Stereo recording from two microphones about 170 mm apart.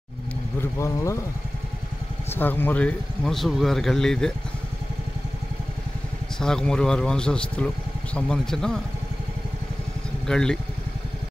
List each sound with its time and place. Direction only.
0.6 s speech: 15° left (ahead or behind)
2.3 s speech: 10° left (ahead or behind)
6.4 s speech: 5° left (ahead or behind)
10.2 s speech: 5° left (ahead or behind)